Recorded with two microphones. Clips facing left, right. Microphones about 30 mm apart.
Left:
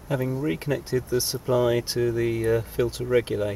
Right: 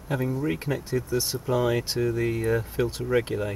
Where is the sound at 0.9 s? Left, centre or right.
Left.